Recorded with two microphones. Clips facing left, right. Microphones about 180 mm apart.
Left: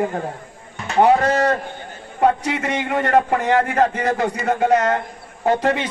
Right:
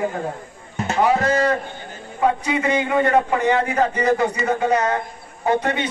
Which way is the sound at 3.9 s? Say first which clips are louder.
Right 2 dB; 75° left (ahead or behind).